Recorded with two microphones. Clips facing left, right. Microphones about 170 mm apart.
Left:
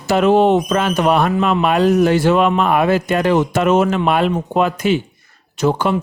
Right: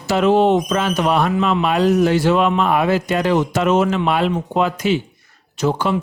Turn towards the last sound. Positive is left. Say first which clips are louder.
# left 2 dB
turn(degrees=55)  # may be behind; listen again after turning